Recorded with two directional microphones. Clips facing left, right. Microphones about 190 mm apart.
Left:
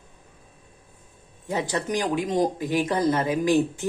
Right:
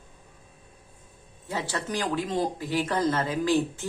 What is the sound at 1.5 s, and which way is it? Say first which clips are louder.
Speech: left 5 dB; 20° left (ahead or behind).